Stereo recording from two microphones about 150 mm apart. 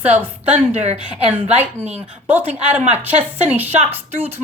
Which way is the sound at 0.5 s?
45° right (ahead or behind).